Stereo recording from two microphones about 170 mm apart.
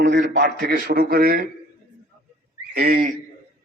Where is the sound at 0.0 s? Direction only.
85° right; by 1.5 s 65° right (ahead or behind).